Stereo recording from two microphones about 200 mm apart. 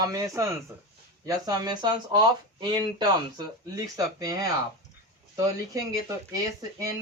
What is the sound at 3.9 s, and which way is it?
Speech, 15° right (ahead or behind).